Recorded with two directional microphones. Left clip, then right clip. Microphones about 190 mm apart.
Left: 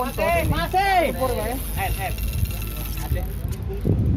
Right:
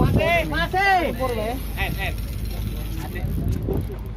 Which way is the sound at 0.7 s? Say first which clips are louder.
Even; 10° right (ahead or behind).